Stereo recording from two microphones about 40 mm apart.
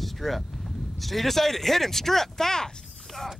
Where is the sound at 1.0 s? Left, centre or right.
Centre.